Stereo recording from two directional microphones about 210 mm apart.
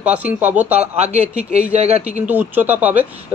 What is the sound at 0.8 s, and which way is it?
A man's voice, 30° right (ahead or behind).